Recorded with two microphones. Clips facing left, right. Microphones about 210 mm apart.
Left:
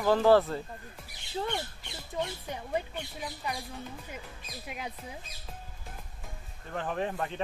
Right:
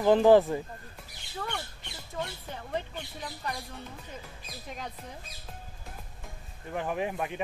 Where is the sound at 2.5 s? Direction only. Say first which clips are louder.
Left 2 dB; 10° left (ahead or behind).